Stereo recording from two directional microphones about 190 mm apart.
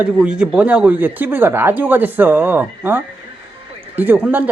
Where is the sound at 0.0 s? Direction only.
5° right (ahead or behind).